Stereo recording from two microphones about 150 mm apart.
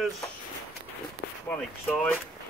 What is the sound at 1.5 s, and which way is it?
Speech, 10° left (ahead or behind).